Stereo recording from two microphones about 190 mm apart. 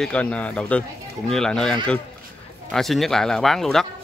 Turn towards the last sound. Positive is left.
turn(degrees=0)  # may be behind; listen again after turning